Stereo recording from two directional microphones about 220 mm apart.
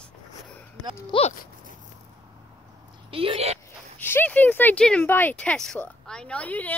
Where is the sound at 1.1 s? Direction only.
25° left (ahead or behind).